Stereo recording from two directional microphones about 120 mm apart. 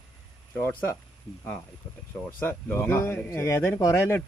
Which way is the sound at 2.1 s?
15° left (ahead or behind).